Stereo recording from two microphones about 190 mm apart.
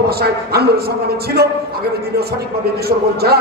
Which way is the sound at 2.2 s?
55° right (ahead or behind).